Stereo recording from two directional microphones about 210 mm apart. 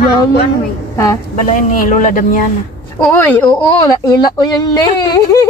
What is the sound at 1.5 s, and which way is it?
Speech, 40° left (ahead or behind).